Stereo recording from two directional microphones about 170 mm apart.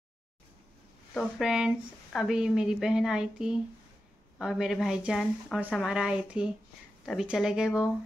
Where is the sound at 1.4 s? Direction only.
5° right (ahead or behind).